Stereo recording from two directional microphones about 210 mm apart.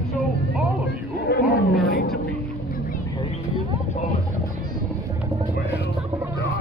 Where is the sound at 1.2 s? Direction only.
50° left (ahead or behind).